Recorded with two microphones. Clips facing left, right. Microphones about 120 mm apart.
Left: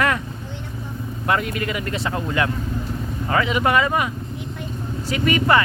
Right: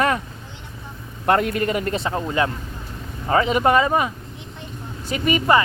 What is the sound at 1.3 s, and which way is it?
Speech, 45° right (ahead or behind).